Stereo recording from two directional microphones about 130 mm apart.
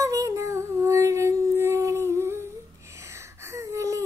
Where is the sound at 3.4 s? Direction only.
25° right (ahead or behind).